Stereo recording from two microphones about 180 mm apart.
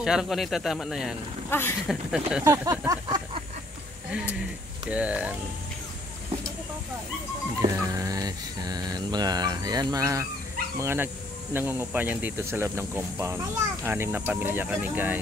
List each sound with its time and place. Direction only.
0.0 s speech: 5° right (ahead or behind)
1.5 s speech: 10° left (ahead or behind)
1.9 s speech: 5° right (ahead or behind)
2.4 s a sound: 20° right (ahead or behind)
4.8 s speech: 5° right (ahead or behind)
7.6 s speech: 15° right (ahead or behind)